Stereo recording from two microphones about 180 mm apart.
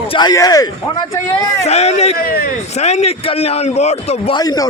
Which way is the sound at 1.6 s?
35° left (ahead or behind).